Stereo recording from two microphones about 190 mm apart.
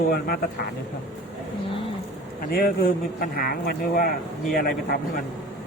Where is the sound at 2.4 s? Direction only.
50° left (ahead or behind).